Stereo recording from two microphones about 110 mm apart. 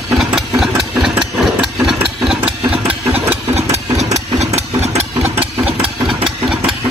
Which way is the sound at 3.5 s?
80° right.